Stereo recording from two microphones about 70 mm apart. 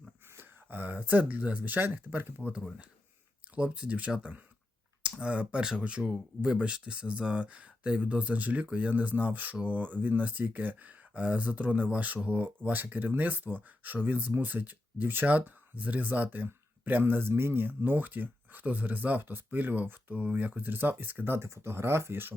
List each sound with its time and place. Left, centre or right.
0.3 s speech: right
3.5 s speech: centre
21.4 s speech: right